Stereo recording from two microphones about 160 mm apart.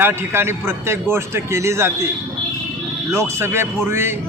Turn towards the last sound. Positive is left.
turn(degrees=-15)  # may be behind; listen again after turning